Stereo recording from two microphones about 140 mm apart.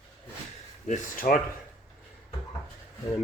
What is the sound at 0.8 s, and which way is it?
Speech, 70° left (ahead or behind).